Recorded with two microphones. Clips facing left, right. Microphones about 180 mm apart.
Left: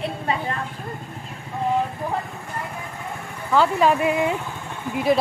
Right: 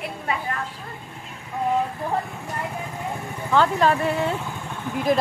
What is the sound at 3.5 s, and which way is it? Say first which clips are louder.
Speech: left 1 dB; 10° left (ahead or behind).